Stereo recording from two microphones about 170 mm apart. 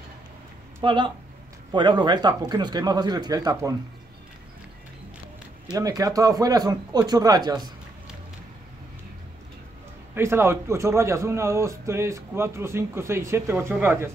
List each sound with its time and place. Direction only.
0.8 s speech: 30° right (ahead or behind)
5.8 s speech: 20° right (ahead or behind)
10.1 s a man's voice: 15° right (ahead or behind)